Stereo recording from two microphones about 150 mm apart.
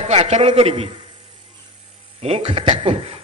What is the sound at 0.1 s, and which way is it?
Speech, 45° right (ahead or behind).